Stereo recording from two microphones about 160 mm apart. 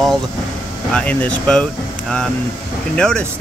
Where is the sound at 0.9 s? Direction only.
10° left (ahead or behind).